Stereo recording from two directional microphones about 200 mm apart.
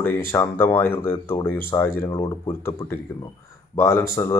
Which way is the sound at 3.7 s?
10° left (ahead or behind).